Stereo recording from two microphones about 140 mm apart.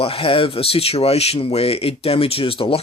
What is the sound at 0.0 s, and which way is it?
Speech, 40° left (ahead or behind).